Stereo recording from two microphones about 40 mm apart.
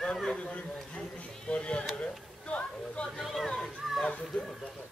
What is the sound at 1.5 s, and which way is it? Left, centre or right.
Speech, left.